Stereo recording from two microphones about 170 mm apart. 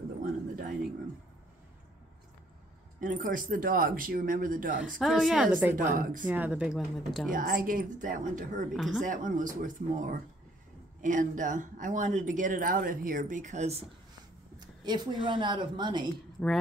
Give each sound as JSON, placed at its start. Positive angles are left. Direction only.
{"t": 0.2, "sound": "a sound", "side_deg": -55}
{"t": 3.0, "sound": "speech", "side_deg": -50}
{"t": 4.9, "sound": "speech", "side_deg": 0}
{"t": 5.8, "sound": "speech", "side_deg": -50}
{"t": 6.2, "sound": "speech", "side_deg": -10}
{"t": 7.2, "sound": "speech", "side_deg": -55}
{"t": 8.7, "sound": "speech", "side_deg": 0}
{"t": 9.0, "sound": "speech", "side_deg": -50}
{"t": 14.6, "sound": "speech", "side_deg": -25}